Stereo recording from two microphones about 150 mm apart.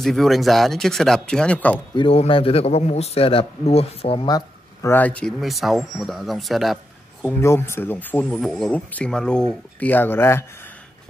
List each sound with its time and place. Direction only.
0.0 s speech: centre (ahead or behind)
2.0 s a man's voice: 40° left (ahead or behind)
4.3 s a sound: 25° left (ahead or behind)
4.9 s speech: 10° left (ahead or behind)
5.4 s speech: centre (ahead or behind)
7.2 s speech: 15° left (ahead or behind)